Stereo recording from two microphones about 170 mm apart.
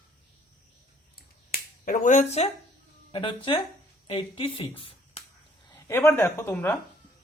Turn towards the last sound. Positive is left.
turn(degrees=15)  # may be behind; listen again after turning